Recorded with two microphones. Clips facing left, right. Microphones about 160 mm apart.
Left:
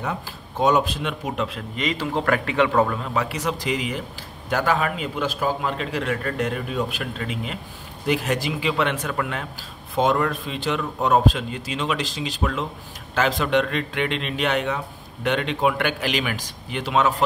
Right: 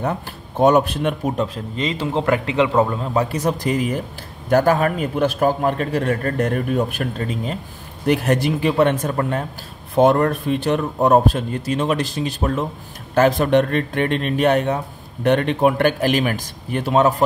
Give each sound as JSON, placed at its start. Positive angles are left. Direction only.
{"t": 0.0, "sound": "a man's voice", "side_deg": -50}
{"t": 3.0, "sound": "a man's voice", "side_deg": -40}
{"t": 8.1, "sound": "a man's voice", "side_deg": -55}
{"t": 9.9, "sound": "a man's voice", "side_deg": -50}